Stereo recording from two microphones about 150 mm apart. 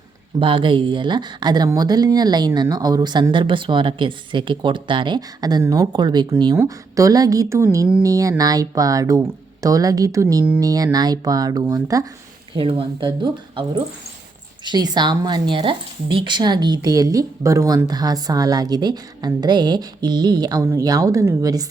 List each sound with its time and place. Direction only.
0.3 s speech: 35° right (ahead or behind)
12.5 s speech: 35° right (ahead or behind)